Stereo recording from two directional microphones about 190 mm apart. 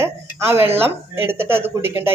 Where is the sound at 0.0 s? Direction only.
15° right (ahead or behind).